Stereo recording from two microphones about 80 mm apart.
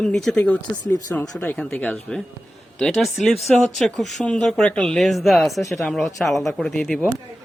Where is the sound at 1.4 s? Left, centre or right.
Left.